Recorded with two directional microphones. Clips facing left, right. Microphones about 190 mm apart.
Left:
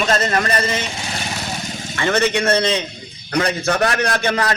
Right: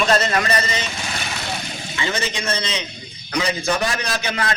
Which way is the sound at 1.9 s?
55° left (ahead or behind).